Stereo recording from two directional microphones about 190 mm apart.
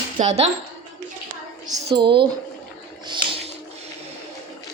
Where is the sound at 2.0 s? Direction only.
25° right (ahead or behind).